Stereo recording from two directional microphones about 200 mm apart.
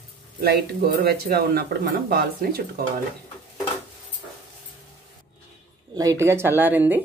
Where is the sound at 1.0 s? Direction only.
50° right (ahead or behind).